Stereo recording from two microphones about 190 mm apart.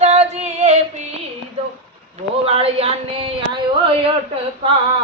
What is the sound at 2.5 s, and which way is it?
Speech, 30° right (ahead or behind).